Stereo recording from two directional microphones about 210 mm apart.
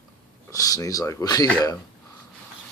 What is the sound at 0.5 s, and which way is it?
Speech, 15° left (ahead or behind).